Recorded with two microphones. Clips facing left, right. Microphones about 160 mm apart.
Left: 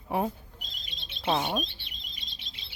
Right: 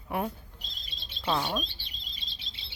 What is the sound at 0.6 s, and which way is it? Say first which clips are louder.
Bird: left 1 dB; 30° right (ahead or behind).